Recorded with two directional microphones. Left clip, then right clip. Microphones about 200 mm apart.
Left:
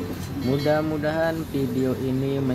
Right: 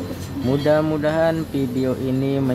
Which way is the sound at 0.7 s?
15° right (ahead or behind).